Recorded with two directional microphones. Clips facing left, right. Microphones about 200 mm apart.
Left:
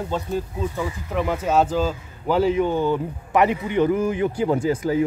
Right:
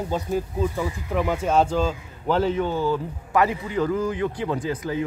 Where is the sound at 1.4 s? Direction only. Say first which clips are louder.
Left 2 dB; 5° left (ahead or behind).